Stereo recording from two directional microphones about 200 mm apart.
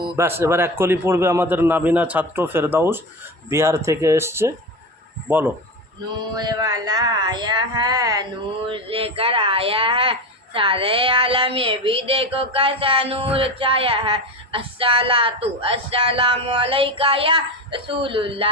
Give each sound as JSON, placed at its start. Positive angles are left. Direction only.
{"t": 0.2, "sound": "a man's voice", "side_deg": -10}